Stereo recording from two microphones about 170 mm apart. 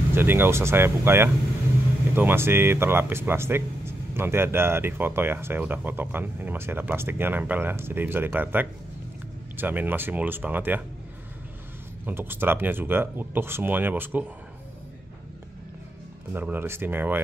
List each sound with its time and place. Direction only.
0.1 s speech: 15° right (ahead or behind)
12.1 s speech: 10° right (ahead or behind)
16.3 s speech: 10° right (ahead or behind)